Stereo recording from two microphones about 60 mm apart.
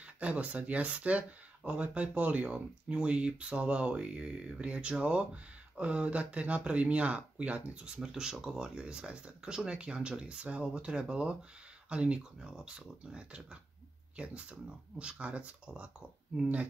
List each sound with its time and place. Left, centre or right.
0.0 s speech: right